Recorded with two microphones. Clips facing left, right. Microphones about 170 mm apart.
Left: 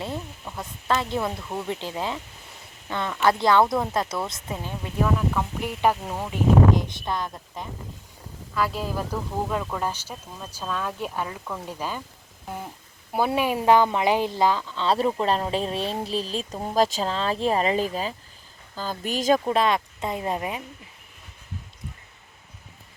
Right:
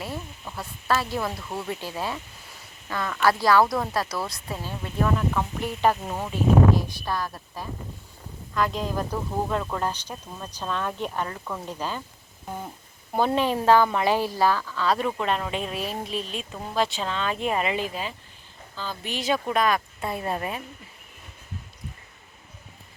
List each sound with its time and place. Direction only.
0.5 s speech: 20° left (ahead or behind)
1.4 s speech: centre (ahead or behind)
1.6 s speech: 20° left (ahead or behind)
5.0 s speech: 5° left (ahead or behind); by 7.7 s 20° left (ahead or behind)
8.5 s speech: 5° left (ahead or behind)
13.1 s a woman's voice: 10° left (ahead or behind); by 19.4 s 45° left (ahead or behind)
19.5 s speech: 25° left (ahead or behind)